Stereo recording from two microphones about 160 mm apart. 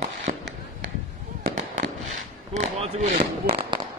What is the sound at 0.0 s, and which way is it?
Fireworks, 45° right (ahead or behind).